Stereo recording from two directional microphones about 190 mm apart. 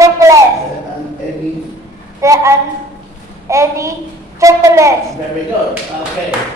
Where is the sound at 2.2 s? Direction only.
15° right (ahead or behind).